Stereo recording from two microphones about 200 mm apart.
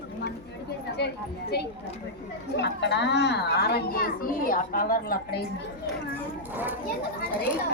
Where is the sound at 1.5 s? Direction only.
55° left (ahead or behind).